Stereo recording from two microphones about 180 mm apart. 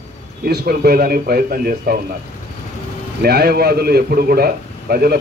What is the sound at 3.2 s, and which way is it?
A man's voice, 60° right (ahead or behind).